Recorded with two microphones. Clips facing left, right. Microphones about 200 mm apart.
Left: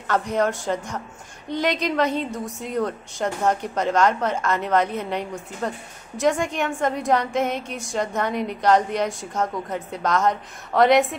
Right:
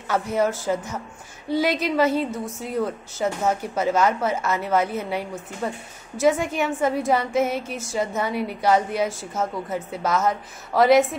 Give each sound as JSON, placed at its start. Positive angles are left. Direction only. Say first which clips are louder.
{"t": 0.1, "sound": "a woman's voice", "louder": "even", "side_deg": -5}